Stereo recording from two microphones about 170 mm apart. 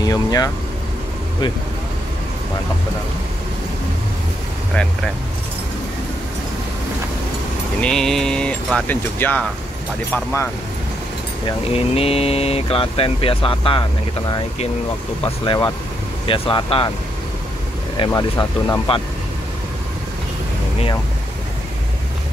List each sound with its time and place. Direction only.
0.0 s speech: 20° left (ahead or behind)
7.8 s speech: 5° left (ahead or behind)
11.4 s speech: 35° left (ahead or behind)
15.4 s speech: 25° left (ahead or behind)
17.9 s speech: 30° left (ahead or behind)